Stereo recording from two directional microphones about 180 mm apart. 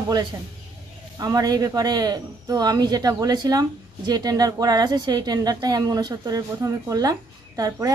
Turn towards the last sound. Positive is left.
turn(degrees=-20)  # may be behind; listen again after turning